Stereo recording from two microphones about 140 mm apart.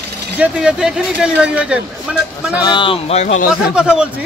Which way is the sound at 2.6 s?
35° left (ahead or behind).